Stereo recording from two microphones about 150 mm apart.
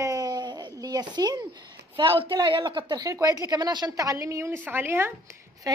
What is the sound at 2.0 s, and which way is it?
A woman's voice, 35° right (ahead or behind).